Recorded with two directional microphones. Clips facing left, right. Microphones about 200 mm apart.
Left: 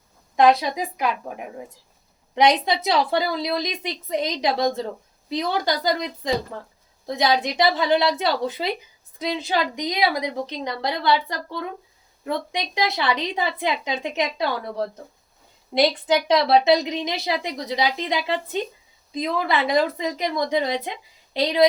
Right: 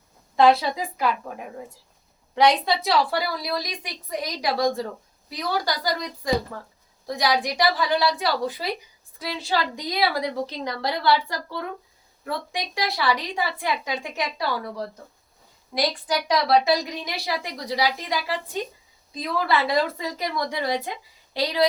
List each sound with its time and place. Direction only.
0.3 s a woman's voice: 15° left (ahead or behind)
2.3 s a woman's voice: 20° left (ahead or behind)